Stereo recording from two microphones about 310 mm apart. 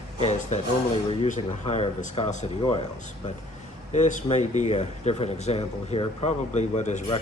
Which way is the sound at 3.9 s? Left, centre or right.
Left.